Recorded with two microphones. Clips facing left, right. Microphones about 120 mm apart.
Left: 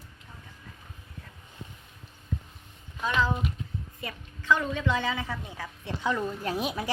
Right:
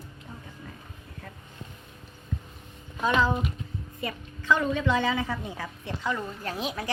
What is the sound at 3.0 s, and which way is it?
Speech, 45° right (ahead or behind).